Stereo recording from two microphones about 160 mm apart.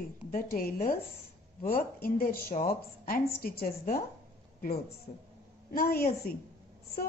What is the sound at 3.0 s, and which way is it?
Speech, 70° left (ahead or behind).